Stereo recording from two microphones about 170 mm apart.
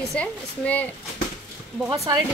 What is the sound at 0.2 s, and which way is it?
Speech, 10° left (ahead or behind).